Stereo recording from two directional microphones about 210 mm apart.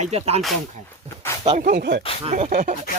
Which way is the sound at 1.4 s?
40° right (ahead or behind).